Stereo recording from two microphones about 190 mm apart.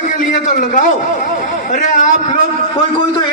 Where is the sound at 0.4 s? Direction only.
40° left (ahead or behind).